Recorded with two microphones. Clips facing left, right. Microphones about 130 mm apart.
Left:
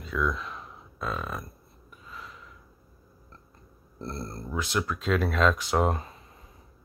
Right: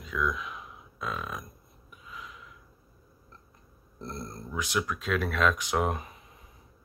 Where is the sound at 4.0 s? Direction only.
15° right (ahead or behind).